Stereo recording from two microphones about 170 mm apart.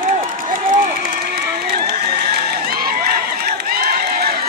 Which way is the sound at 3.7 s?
65° right (ahead or behind).